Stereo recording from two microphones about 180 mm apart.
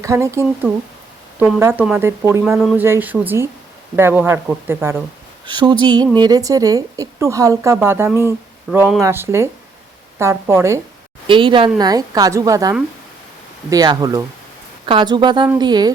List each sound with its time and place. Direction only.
0.0 s speech: 15° right (ahead or behind)
5.5 s a woman's voice: 25° right (ahead or behind)
11.3 s a woman's voice: 30° right (ahead or behind)